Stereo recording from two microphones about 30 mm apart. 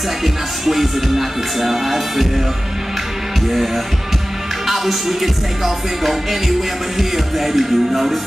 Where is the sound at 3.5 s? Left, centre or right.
Centre.